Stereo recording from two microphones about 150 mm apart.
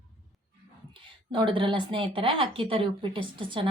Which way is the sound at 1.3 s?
35° right (ahead or behind).